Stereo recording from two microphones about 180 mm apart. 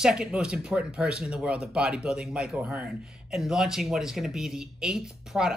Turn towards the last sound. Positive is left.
turn(degrees=-5)  # may be behind; listen again after turning